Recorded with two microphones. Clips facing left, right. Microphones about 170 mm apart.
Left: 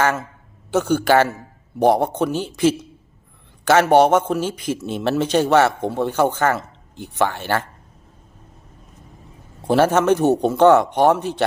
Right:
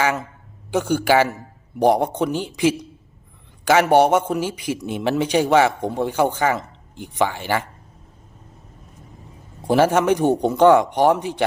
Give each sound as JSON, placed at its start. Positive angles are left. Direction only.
{"t": 0.0, "sound": "speech", "side_deg": -15}
{"t": 9.6, "sound": "speech", "side_deg": -15}